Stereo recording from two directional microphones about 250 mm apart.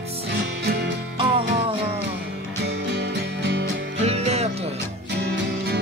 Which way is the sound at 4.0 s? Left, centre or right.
Right.